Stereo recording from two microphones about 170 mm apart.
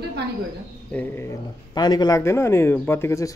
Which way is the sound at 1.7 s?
25° left (ahead or behind).